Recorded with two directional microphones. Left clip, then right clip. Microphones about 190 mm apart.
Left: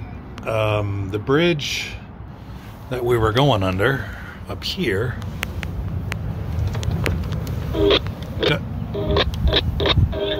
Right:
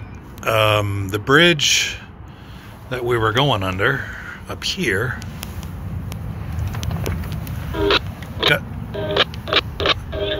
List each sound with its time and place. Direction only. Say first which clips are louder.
0.5 s speech: right 5 dB; 5° right (ahead or behind)
2.9 s speech: even; 15° left (ahead or behind)
4.5 s speech: right 2 dB; 5° left (ahead or behind)
7.7 s a sound: left 1 dB; centre (ahead or behind)
9.0 s music: right 2 dB; 10° left (ahead or behind)